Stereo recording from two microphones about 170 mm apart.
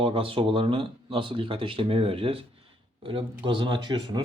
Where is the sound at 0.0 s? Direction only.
30° right (ahead or behind).